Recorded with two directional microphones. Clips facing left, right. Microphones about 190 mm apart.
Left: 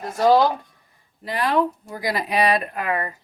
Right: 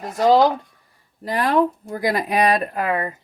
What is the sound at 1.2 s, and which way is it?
Speech, 45° right (ahead or behind).